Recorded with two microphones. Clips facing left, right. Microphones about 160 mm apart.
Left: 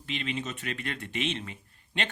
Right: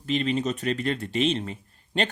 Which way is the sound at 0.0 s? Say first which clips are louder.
Right 9 dB; 40° right (ahead or behind).